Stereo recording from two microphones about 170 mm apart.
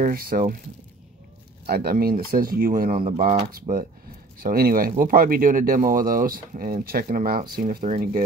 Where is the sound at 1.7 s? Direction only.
65° right (ahead or behind); by 3.7 s 45° right (ahead or behind).